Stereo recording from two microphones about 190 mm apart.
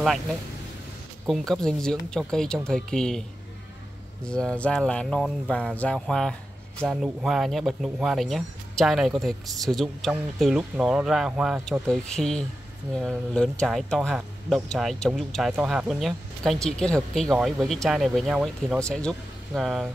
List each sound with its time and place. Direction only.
0.0 s speech: centre (ahead or behind)